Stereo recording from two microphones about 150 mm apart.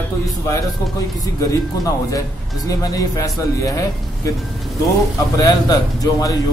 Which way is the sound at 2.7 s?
25° left (ahead or behind).